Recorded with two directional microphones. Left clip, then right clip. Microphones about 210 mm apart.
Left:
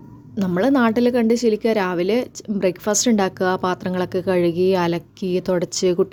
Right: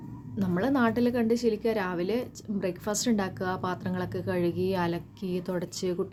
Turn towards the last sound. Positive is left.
turn(degrees=40)  # may be behind; listen again after turning